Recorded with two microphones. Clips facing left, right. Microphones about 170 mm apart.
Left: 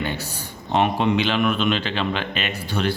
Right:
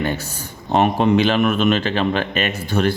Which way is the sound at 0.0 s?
45° right (ahead or behind).